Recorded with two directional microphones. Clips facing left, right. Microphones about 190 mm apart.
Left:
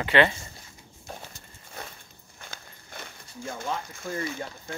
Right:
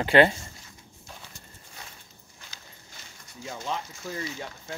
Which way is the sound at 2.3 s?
55° left (ahead or behind).